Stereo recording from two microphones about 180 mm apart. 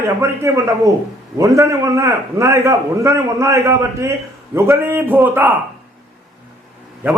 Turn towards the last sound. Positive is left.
turn(degrees=-10)  # may be behind; listen again after turning